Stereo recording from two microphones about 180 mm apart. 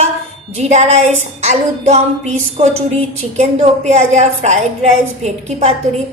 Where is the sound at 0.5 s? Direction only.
35° right (ahead or behind).